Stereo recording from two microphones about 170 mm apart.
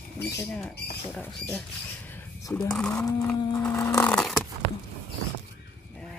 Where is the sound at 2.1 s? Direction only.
20° left (ahead or behind).